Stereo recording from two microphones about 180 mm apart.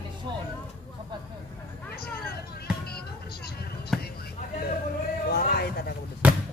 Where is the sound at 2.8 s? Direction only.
60° left (ahead or behind).